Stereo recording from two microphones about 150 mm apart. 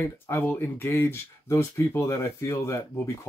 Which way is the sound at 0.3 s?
15° left (ahead or behind).